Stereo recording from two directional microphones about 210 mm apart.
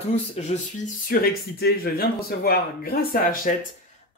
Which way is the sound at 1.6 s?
45° left (ahead or behind).